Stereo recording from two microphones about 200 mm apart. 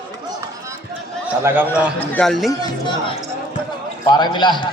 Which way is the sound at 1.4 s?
10° right (ahead or behind).